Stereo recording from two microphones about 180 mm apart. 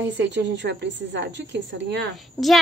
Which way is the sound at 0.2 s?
70° right (ahead or behind).